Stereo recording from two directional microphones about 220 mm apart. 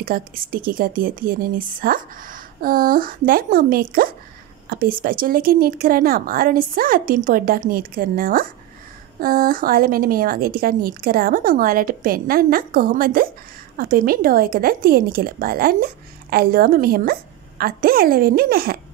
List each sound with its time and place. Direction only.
0.0 s speech: 40° right (ahead or behind)